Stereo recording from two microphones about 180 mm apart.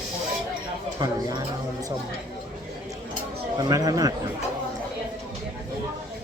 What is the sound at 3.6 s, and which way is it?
Speech, 20° right (ahead or behind).